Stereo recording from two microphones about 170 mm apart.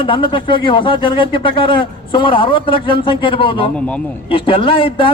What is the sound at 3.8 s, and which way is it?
Speech, 5° left (ahead or behind).